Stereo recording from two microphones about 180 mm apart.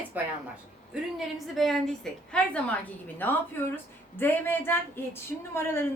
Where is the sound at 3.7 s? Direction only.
10° left (ahead or behind).